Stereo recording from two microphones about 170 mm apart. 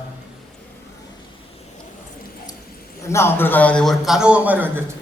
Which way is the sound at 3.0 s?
15° left (ahead or behind).